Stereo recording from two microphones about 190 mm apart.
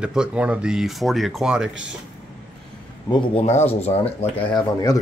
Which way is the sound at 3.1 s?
35° left (ahead or behind).